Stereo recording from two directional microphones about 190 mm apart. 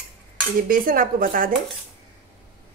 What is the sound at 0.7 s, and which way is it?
Speech, 45° right (ahead or behind).